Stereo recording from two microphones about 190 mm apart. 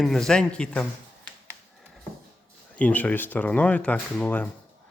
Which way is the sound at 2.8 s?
5° left (ahead or behind).